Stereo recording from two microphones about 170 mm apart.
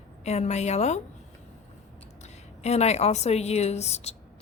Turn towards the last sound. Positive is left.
turn(degrees=40)  # may be behind; listen again after turning